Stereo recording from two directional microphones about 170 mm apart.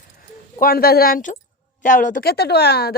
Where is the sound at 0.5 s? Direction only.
60° left (ahead or behind).